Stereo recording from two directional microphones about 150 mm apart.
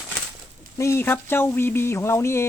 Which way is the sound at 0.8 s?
15° left (ahead or behind).